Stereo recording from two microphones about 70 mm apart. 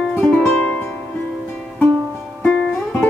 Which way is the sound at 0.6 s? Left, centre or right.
Left.